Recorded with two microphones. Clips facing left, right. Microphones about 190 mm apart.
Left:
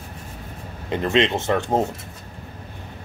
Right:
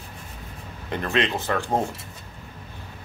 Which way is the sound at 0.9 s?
20° left (ahead or behind).